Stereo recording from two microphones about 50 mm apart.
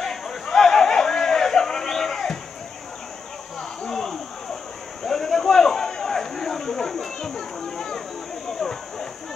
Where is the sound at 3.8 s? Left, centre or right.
Centre.